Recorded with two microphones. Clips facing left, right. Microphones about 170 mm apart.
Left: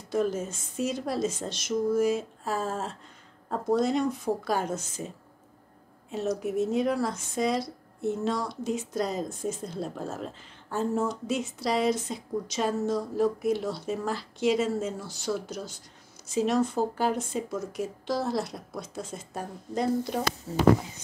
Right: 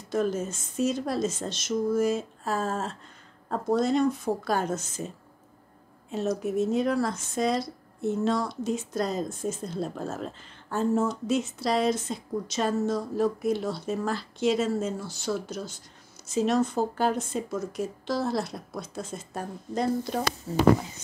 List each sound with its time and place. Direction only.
0.1 s speech: 10° left (ahead or behind)
6.1 s speech: 10° left (ahead or behind)